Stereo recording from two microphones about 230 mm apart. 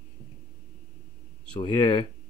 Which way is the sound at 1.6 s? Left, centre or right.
Centre.